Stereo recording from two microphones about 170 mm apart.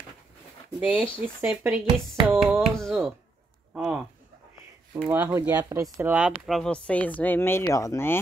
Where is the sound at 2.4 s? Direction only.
5° right (ahead or behind).